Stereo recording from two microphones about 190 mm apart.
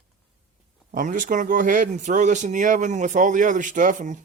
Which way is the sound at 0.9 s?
45° right (ahead or behind).